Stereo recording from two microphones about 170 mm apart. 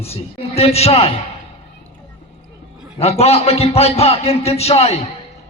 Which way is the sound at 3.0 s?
35° left (ahead or behind).